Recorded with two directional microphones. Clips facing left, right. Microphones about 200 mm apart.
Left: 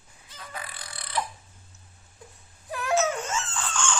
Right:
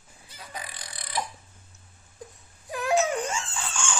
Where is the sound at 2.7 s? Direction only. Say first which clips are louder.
Right 1 dB; 15° right (ahead or behind).